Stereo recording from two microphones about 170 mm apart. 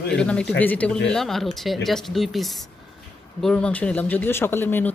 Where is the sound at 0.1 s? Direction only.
5° left (ahead or behind).